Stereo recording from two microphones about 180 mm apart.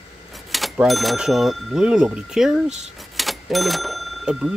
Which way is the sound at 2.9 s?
Centre (ahead or behind).